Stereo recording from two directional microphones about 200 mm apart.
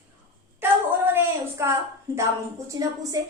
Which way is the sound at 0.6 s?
10° right (ahead or behind).